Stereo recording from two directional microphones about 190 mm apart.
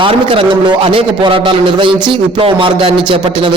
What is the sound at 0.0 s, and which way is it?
A man's voice, 30° right (ahead or behind).